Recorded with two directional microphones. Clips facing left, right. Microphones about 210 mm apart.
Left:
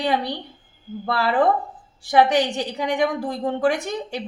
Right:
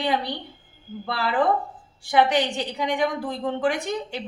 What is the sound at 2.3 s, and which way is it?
A woman's voice, 45° left (ahead or behind).